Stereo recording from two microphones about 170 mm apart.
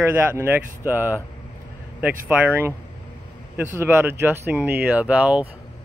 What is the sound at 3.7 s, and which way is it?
Speech, 15° right (ahead or behind).